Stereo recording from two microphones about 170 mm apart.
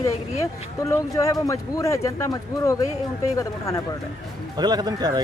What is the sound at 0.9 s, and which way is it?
Speech, 20° left (ahead or behind).